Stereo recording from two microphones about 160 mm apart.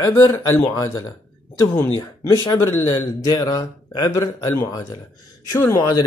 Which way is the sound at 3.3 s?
25° left (ahead or behind).